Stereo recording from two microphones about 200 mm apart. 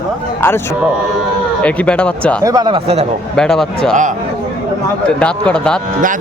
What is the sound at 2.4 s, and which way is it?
Speech, 20° right (ahead or behind).